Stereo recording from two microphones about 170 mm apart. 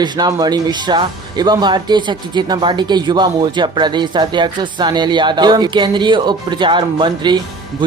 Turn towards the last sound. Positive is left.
turn(degrees=-25)  # may be behind; listen again after turning